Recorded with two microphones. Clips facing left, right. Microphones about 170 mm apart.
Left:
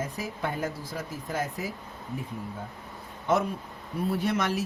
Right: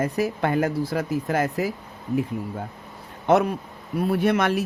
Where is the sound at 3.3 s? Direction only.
70° right (ahead or behind).